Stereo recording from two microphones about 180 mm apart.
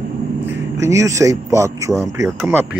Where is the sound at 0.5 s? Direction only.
15° right (ahead or behind).